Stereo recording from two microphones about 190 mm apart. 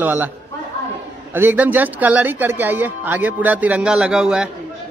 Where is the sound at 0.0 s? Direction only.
10° right (ahead or behind).